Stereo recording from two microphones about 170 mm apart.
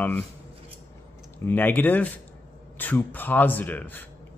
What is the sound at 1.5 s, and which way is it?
Speech, 10° left (ahead or behind).